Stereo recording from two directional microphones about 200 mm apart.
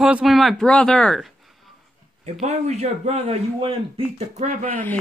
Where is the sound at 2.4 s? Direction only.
35° right (ahead or behind).